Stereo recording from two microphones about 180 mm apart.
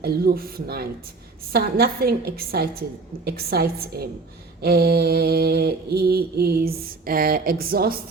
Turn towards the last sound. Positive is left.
turn(degrees=-55)  # may be behind; listen again after turning